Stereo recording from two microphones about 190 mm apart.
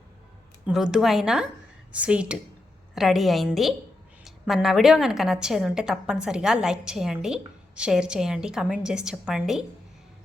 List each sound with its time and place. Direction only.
0.7 s a woman's voice: 5° right (ahead or behind)